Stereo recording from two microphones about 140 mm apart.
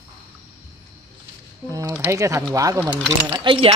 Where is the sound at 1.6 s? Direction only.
25° right (ahead or behind).